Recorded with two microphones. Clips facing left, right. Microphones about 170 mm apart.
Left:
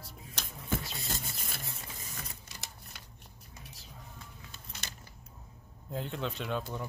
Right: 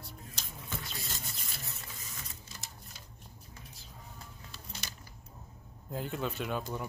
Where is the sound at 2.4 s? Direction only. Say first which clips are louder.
Even; 70° left (ahead or behind).